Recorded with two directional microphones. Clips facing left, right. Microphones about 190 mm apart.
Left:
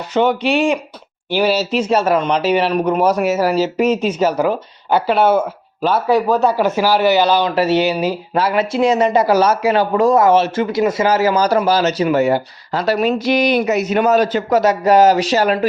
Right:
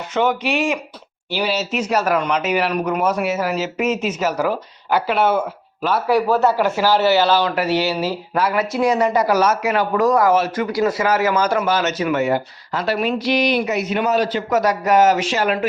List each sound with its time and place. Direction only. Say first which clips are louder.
0.1 s speech: left 4 dB; 30° left (ahead or behind)
1.3 s speech: left 6 dB; 45° left (ahead or behind)
1.7 s speech: left 4 dB; 30° left (ahead or behind)
5.8 s speech: left 3 dB; 25° left (ahead or behind)
8.4 s speech: left 3 dB; 30° left (ahead or behind); by 14.4 s 45° left (ahead or behind)
14.5 s speech: left 4 dB; 30° left (ahead or behind)